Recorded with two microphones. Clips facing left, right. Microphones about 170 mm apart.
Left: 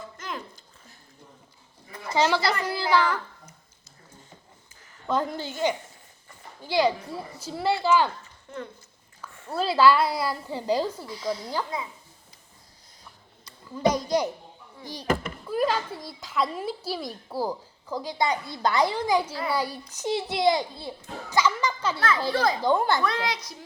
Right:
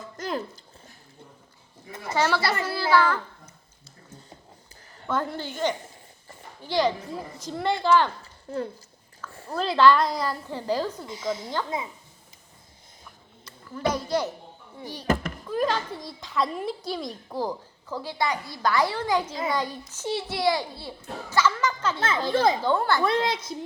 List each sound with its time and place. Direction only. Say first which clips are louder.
0.2 s a sound: right 8 dB; 35° right (ahead or behind)
2.1 s a child's voice: left 1 dB; 15° left (ahead or behind)
5.0 s a child's voice: left 1 dB; 15° left (ahead or behind)
6.6 s a child's voice: left 1 dB; 10° left (ahead or behind)
8.2 s a sound: right 6 dB; 35° right (ahead or behind)
9.2 s a sound: right 2 dB; 10° left (ahead or behind)
9.6 s a child's voice: right 1 dB; 5° left (ahead or behind)
11.0 s speech: even; 20° right (ahead or behind)
13.4 s a child's voice: left 4 dB; 15° left (ahead or behind)
15.4 s a child's voice: left 1 dB; 10° left (ahead or behind)
22.3 s speech: right 5 dB; 25° right (ahead or behind)
22.6 s a child's voice: left 1 dB; 15° left (ahead or behind)
23.0 s speech: right 3 dB; 25° right (ahead or behind)